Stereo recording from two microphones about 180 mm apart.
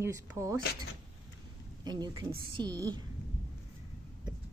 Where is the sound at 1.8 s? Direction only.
25° right (ahead or behind).